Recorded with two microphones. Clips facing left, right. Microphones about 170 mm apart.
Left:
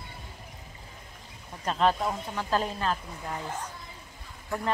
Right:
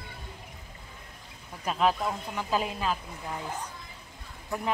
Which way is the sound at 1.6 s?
5° right (ahead or behind).